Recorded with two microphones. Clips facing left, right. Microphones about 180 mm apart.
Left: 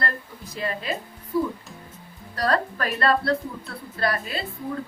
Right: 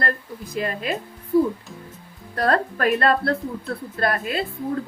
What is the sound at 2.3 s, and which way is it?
A woman's voice, 50° right (ahead or behind).